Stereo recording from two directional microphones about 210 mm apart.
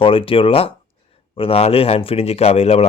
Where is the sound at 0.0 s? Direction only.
25° left (ahead or behind).